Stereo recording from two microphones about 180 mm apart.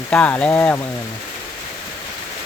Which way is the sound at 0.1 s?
5° left (ahead or behind).